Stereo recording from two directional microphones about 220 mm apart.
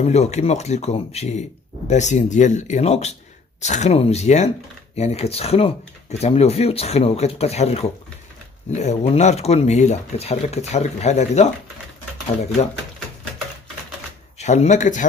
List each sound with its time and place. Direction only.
0.0 s speech: 30° left (ahead or behind)
14.4 s speech: 30° left (ahead or behind)